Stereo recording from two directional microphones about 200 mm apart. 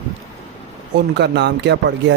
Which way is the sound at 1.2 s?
60° right (ahead or behind).